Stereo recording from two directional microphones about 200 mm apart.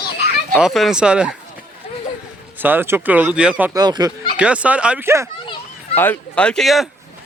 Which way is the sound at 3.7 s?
20° right (ahead or behind).